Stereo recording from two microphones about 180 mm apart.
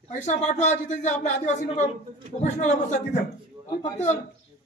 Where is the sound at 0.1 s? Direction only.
40° left (ahead or behind).